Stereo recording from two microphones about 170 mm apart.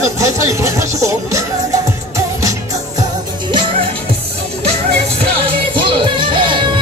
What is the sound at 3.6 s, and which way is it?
Music, 35° right (ahead or behind).